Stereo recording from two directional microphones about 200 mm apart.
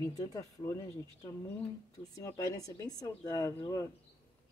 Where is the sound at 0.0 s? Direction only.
15° left (ahead or behind).